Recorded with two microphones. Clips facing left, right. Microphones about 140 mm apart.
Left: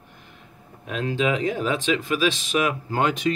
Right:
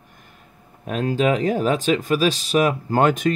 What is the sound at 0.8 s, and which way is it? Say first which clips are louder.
Speech: right 4 dB; 45° right (ahead or behind).